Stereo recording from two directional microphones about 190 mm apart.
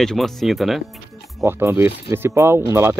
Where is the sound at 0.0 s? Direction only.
Centre (ahead or behind).